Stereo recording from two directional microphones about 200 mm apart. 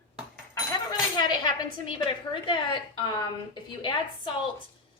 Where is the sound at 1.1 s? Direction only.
20° left (ahead or behind).